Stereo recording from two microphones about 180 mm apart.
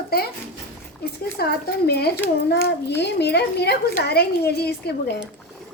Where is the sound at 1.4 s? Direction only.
60° left (ahead or behind).